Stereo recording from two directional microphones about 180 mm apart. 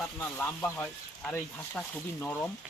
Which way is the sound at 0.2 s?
10° left (ahead or behind).